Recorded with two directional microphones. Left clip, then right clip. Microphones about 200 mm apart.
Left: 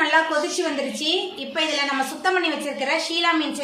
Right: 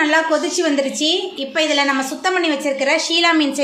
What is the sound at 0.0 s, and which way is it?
A woman's voice, 35° right (ahead or behind).